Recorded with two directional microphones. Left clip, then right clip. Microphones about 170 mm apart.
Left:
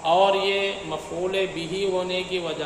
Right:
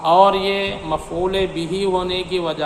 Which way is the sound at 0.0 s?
40° right (ahead or behind).